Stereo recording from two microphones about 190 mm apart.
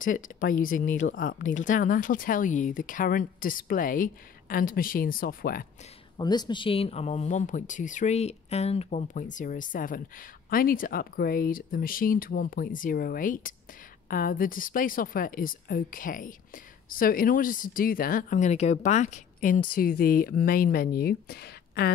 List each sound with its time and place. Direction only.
0.0 s speech: 45° left (ahead or behind)
6.1 s speech: 20° left (ahead or behind); by 21.9 s 55° left (ahead or behind)